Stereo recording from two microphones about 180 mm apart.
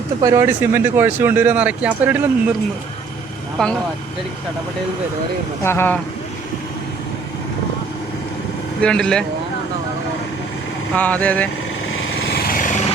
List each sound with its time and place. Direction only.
0.2 s speech: 15° right (ahead or behind)
3.6 s speech: centre (ahead or behind)
5.6 s speech: 10° left (ahead or behind)
8.8 s speech: 5° left (ahead or behind)
10.9 s speech: 10° left (ahead or behind)
11.9 s vehicle: 55° left (ahead or behind)